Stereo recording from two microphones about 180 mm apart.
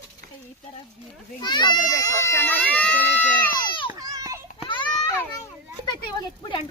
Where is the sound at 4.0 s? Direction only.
20° right (ahead or behind).